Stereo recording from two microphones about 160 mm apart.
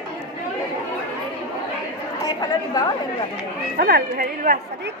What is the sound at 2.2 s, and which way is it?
Chatter, 25° left (ahead or behind).